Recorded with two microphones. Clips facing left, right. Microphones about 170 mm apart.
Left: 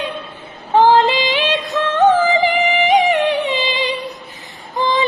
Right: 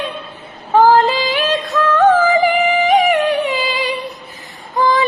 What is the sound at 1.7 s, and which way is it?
Music, 20° left (ahead or behind).